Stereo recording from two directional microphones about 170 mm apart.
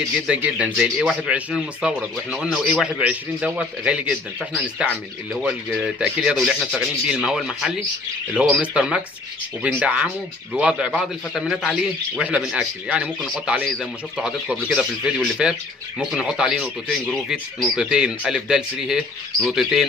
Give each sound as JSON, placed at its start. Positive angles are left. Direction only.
{"t": 0.3, "sound": "a man's voice", "side_deg": -5}